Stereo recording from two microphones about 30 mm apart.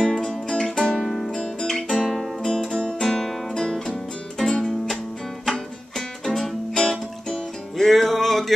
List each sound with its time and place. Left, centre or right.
0.0 s music: left
0.5 s music: centre
1.6 s guitar: centre
2.0 s music: centre
6.2 s music: centre